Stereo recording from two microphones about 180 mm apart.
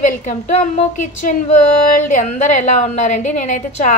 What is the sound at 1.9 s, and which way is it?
A woman's voice, 45° left (ahead or behind).